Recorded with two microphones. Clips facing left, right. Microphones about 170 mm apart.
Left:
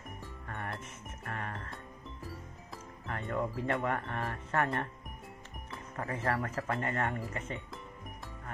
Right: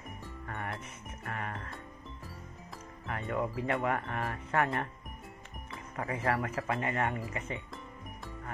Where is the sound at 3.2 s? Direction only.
Centre (ahead or behind).